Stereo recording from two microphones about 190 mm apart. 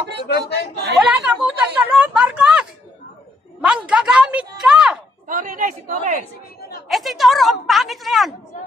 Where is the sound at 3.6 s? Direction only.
5° right (ahead or behind).